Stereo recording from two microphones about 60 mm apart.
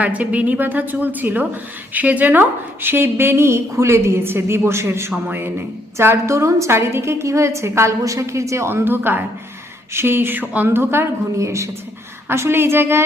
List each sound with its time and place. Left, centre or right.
0.0 s a woman's voice: right
5.1 s speech: right
6.3 s a woman's voice: right
10.7 s a woman's voice: right
12.3 s a woman's voice: right